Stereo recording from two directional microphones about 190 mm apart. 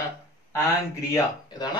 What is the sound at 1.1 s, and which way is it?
Speech, 20° left (ahead or behind).